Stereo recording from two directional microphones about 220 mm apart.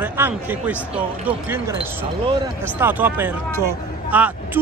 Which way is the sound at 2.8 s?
10° right (ahead or behind).